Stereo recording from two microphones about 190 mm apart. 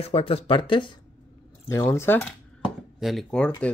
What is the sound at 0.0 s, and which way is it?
Speech, 30° left (ahead or behind).